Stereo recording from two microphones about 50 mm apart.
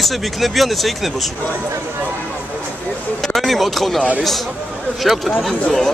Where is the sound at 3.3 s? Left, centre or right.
Centre.